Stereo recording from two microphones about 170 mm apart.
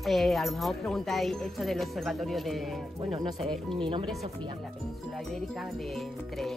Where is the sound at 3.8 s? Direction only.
30° right (ahead or behind).